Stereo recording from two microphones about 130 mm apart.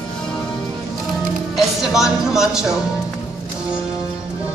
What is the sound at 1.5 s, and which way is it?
Speech, 5° right (ahead or behind).